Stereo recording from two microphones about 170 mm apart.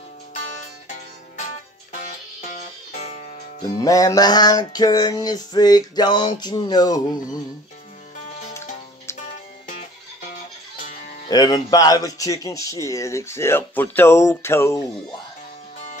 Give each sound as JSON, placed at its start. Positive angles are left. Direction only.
{"t": 1.3, "sound": "music", "side_deg": 45}
{"t": 3.8, "sound": "speech", "side_deg": 20}
{"t": 11.2, "sound": "speech", "side_deg": 25}